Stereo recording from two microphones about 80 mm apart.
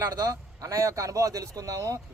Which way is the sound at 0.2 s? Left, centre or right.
Right.